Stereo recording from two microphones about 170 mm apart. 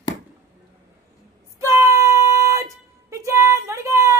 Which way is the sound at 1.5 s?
15° right (ahead or behind).